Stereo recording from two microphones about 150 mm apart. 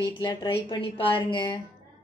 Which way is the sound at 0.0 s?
30° left (ahead or behind).